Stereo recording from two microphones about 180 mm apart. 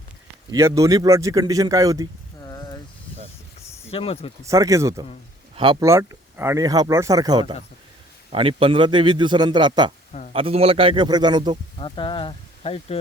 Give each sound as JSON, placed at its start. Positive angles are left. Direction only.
{"t": 0.5, "sound": "a man's voice", "side_deg": -20}
{"t": 2.4, "sound": "a sound", "side_deg": 20}
{"t": 3.8, "sound": "speech", "side_deg": 30}
{"t": 4.4, "sound": "a man's voice", "side_deg": -15}
{"t": 10.1, "sound": "a sound", "side_deg": 45}
{"t": 10.3, "sound": "a man's voice", "side_deg": -30}
{"t": 11.8, "sound": "speech", "side_deg": 30}